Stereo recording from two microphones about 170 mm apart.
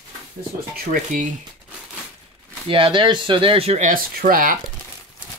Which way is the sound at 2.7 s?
30° right (ahead or behind).